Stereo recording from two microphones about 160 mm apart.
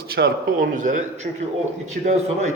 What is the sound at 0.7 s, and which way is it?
A man's voice, 55° right (ahead or behind).